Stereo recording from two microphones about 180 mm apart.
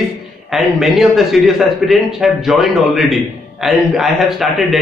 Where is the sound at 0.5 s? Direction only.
Centre (ahead or behind).